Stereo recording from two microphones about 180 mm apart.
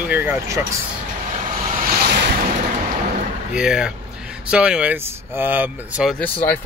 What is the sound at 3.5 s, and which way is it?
Speech, 5° right (ahead or behind).